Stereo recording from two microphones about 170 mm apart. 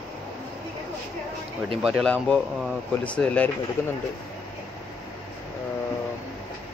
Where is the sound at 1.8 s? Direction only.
Centre (ahead or behind).